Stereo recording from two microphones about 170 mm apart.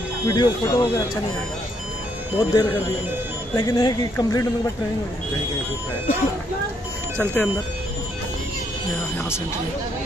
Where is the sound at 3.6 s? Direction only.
25° left (ahead or behind).